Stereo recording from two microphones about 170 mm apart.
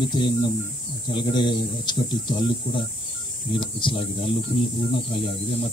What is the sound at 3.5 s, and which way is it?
Speech, 30° left (ahead or behind).